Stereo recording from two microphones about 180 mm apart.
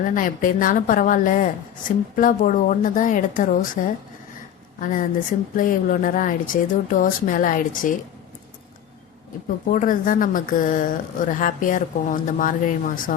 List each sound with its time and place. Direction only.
0.0 s a woman's voice: 45° left (ahead or behind)
9.6 s a woman's voice: 50° left (ahead or behind)